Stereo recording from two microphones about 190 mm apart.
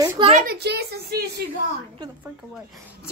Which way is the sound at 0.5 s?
60° right (ahead or behind).